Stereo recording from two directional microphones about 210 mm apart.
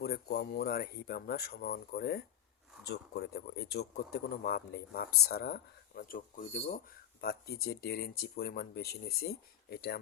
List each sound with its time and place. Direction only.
0.0 s speech: 50° left (ahead or behind); by 6.7 s 35° left (ahead or behind)
7.2 s speech: 45° left (ahead or behind)